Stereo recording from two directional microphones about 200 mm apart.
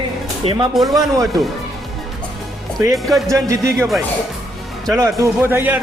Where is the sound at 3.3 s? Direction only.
15° right (ahead or behind).